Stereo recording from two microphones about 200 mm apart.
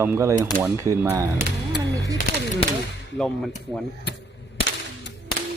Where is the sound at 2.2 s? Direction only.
45° left (ahead or behind).